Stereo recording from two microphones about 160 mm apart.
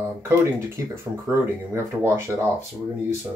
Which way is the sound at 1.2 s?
15° right (ahead or behind).